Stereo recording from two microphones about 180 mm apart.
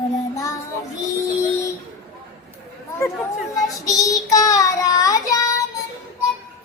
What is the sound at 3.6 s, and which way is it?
Child singing, 20° left (ahead or behind).